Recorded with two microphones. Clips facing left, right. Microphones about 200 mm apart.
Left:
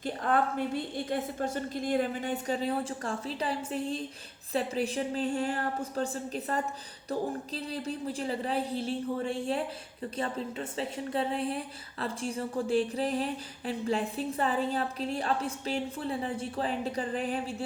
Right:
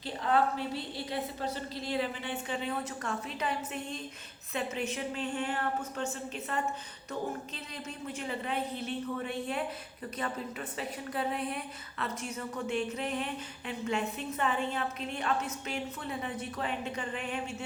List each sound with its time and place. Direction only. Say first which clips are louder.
0.0 s a woman's voice: even; 50° left (ahead or behind)